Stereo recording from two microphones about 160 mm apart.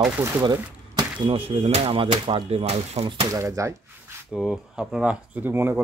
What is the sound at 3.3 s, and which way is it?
Speech, 20° right (ahead or behind).